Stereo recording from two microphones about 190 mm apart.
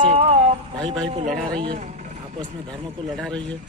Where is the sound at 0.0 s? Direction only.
30° right (ahead or behind).